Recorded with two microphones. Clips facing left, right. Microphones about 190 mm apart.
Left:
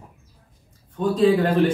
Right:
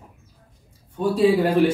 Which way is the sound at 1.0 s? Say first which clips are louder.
Even; 10° right (ahead or behind).